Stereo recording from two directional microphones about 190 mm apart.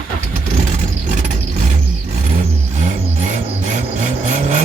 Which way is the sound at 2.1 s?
40° right (ahead or behind).